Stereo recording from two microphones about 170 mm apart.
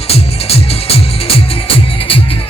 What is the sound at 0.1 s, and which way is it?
Music, 35° left (ahead or behind).